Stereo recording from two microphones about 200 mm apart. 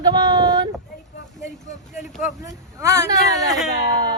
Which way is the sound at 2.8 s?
15° right (ahead or behind).